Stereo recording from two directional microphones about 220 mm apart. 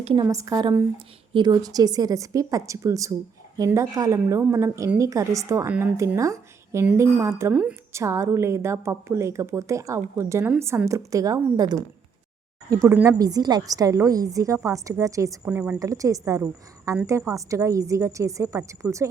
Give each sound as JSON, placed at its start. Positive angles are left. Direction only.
{"t": 0.0, "sound": "a woman's voice", "side_deg": -20}